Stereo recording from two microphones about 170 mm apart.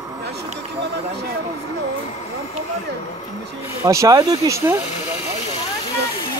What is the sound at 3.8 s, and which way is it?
Speech, 20° right (ahead or behind).